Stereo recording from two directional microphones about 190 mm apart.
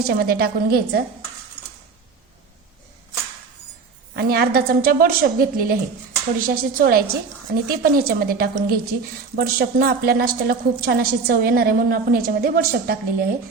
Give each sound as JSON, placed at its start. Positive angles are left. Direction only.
{"t": 0.0, "sound": "a woman's voice", "side_deg": -55}
{"t": 4.1, "sound": "a woman's voice", "side_deg": -55}